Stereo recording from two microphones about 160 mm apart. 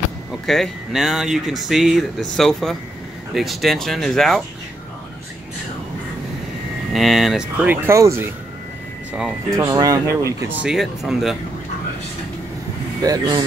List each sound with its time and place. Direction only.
0.5 s speech: centre (ahead or behind)
6.9 s speech: centre (ahead or behind); by 8.3 s 15° right (ahead or behind)
9.5 s speech: 20° right (ahead or behind)
10.6 s speech: 5° right (ahead or behind)
13.0 s speech: 25° right (ahead or behind)